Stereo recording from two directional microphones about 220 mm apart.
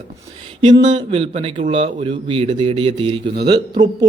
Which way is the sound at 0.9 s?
25° right (ahead or behind).